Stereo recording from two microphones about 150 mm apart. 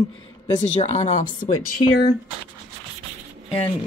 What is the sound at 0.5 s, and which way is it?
Speech, 50° left (ahead or behind).